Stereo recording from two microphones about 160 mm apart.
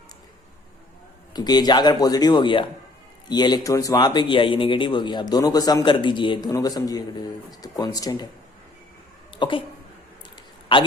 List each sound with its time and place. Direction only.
1.3 s speech: 25° left (ahead or behind)
9.3 s speech: 30° left (ahead or behind)